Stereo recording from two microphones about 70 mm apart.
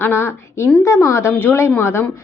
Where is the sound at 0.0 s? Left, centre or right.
Left.